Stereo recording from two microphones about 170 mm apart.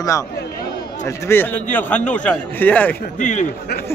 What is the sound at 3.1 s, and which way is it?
Speech, 45° left (ahead or behind).